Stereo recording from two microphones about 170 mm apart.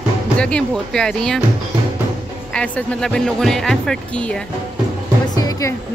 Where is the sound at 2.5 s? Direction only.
5° left (ahead or behind).